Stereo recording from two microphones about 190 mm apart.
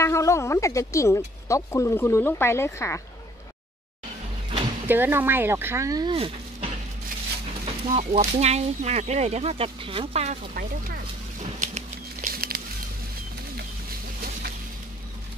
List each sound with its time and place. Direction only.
0.0 s speech: 15° left (ahead or behind)
4.8 s speech: 10° right (ahead or behind); by 11.0 s 50° right (ahead or behind)
11.6 s a sound: 40° right (ahead or behind)